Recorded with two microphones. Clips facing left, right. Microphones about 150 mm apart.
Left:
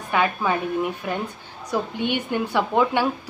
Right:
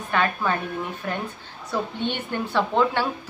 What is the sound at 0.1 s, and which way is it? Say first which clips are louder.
Speech: left 2 dB; 10° left (ahead or behind).